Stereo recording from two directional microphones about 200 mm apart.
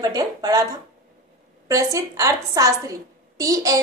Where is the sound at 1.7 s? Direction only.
15° right (ahead or behind).